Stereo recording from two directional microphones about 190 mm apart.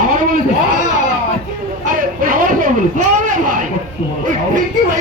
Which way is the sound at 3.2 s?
40° right (ahead or behind).